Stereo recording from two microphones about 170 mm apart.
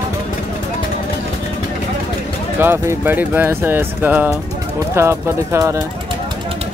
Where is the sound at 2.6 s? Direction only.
15° right (ahead or behind).